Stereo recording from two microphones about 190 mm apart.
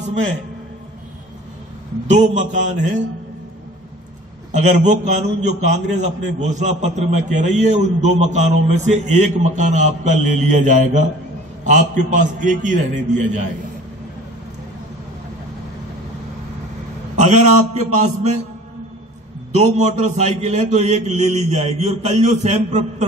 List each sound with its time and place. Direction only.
2.1 s a man's voice: 40° right (ahead or behind)
4.5 s a man's voice: 40° right (ahead or behind)
17.2 s a man's voice: 40° right (ahead or behind)
19.6 s a man's voice: 35° right (ahead or behind)